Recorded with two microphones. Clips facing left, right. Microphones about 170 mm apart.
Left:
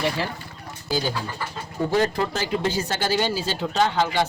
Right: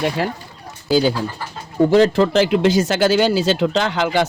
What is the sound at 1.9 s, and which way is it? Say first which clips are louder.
Speech: right 8 dB; 90° right.